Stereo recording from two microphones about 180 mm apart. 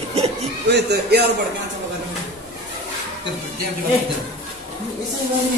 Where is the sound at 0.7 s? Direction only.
65° right (ahead or behind).